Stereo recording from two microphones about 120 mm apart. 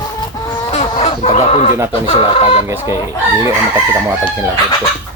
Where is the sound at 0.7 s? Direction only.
65° left (ahead or behind).